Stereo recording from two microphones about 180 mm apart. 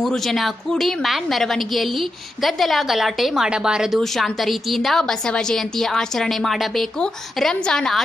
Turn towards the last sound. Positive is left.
turn(degrees=5)  # may be behind; listen again after turning